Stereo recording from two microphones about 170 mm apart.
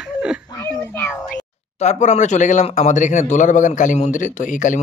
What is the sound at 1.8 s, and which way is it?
A man's voice, 45° left (ahead or behind).